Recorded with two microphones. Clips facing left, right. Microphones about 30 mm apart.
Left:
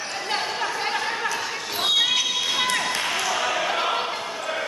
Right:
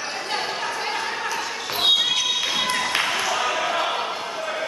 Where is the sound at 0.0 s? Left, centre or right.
Centre.